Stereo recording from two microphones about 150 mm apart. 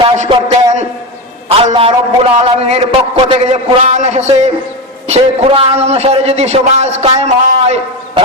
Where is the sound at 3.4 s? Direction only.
45° right (ahead or behind).